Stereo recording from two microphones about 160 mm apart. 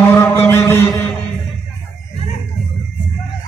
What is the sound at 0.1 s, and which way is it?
Mantra, 15° left (ahead or behind).